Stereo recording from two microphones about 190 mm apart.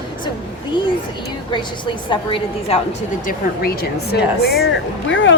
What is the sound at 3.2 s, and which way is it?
Speech, 50° left (ahead or behind).